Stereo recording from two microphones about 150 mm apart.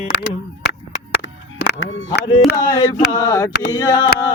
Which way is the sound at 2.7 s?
30° left (ahead or behind).